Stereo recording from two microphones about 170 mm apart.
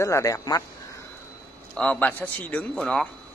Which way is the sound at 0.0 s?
15° left (ahead or behind).